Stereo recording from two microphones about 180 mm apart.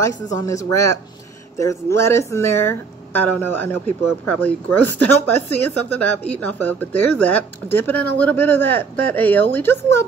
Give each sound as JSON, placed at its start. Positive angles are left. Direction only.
{"t": 0.5, "sound": "speech", "side_deg": 20}